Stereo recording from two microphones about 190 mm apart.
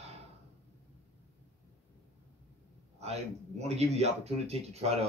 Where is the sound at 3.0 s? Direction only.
35° right (ahead or behind).